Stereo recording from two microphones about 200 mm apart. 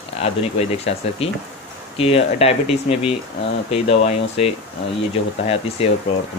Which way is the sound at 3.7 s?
30° left (ahead or behind).